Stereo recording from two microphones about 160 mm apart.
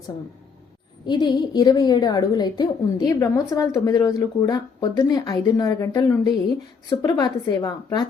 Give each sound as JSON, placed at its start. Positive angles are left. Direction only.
{"t": 1.0, "sound": "a woman's voice", "side_deg": 25}